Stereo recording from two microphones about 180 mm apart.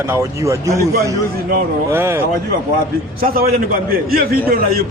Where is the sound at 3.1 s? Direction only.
55° right (ahead or behind).